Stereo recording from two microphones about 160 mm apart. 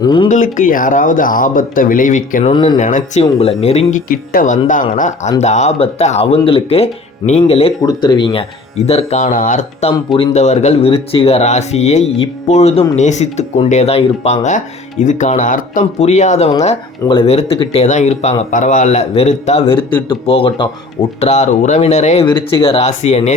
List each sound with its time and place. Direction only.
0.0 s speech: 30° left (ahead or behind)
0.3 s speech: 50° left (ahead or behind)
2.5 s speech: 30° left (ahead or behind)
2.7 s speech: 50° left (ahead or behind)
4.1 s speech: 60° left (ahead or behind); by 7.7 s 40° left (ahead or behind)
7.8 s speech: 25° left (ahead or behind); by 9.9 s 50° left (ahead or behind)
10.1 s speech: 30° left (ahead or behind)
10.3 s speech: 45° left (ahead or behind)
17.1 s speech: 35° left (ahead or behind)
19.7 s speech: 15° left (ahead or behind)
20.1 s speech: 35° left (ahead or behind)
22.3 s speech: 30° left (ahead or behind)